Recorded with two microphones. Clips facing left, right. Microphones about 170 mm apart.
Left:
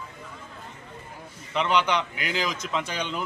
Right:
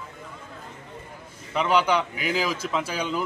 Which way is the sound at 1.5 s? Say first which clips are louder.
Right 2 dB; 5° right (ahead or behind).